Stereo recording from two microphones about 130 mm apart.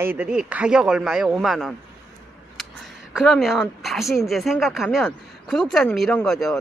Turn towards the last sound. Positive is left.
turn(degrees=5)  # may be behind; listen again after turning